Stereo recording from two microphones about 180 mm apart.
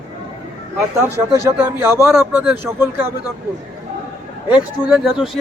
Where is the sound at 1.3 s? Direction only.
15° right (ahead or behind).